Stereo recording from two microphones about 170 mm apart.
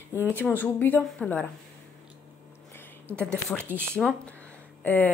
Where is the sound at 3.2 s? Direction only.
5° left (ahead or behind).